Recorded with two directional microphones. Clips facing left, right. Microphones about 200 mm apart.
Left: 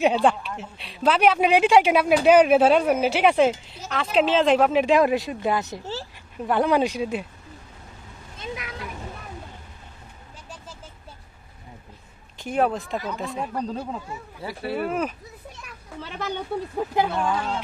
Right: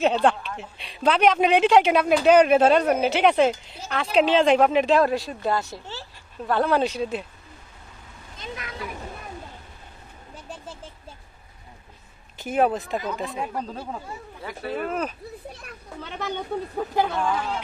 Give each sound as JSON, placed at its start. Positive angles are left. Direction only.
{"t": 0.0, "sound": "a woman's voice", "side_deg": 5}
{"t": 4.8, "sound": "a woman's voice", "side_deg": 15}
{"t": 12.4, "sound": "speech", "side_deg": -5}
{"t": 14.6, "sound": "a woman's voice", "side_deg": 10}